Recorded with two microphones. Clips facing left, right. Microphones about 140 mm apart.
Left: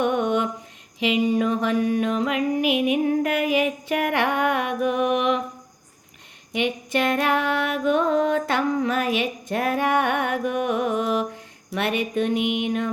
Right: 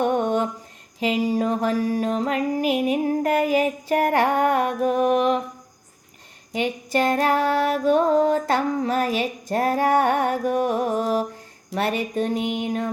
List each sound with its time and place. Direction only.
0.0 s mantra: 40° right (ahead or behind)
0.9 s music: 40° right (ahead or behind)
6.5 s music: 40° right (ahead or behind)